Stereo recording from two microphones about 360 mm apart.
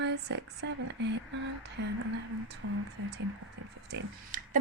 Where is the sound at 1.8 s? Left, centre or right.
Right.